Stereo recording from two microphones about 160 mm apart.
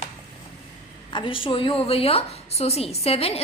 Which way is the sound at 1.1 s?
30° left (ahead or behind).